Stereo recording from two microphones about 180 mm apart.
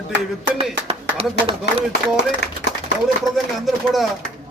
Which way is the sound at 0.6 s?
30° right (ahead or behind).